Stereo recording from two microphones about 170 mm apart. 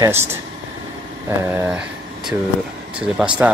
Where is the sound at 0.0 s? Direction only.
15° right (ahead or behind).